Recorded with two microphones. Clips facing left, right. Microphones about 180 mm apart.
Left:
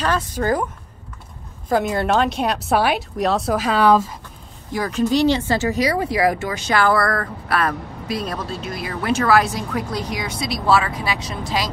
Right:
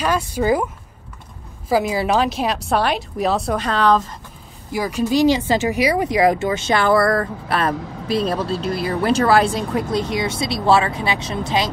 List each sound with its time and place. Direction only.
0.0 s speech: 10° right (ahead or behind)
1.7 s a woman's voice: 5° right (ahead or behind)
4.7 s speech: 10° right (ahead or behind)